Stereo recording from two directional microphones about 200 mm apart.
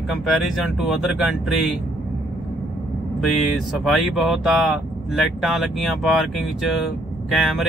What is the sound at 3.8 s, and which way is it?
Speech, centre (ahead or behind).